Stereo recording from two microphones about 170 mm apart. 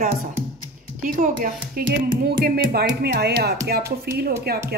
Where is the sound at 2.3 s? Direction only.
65° right (ahead or behind).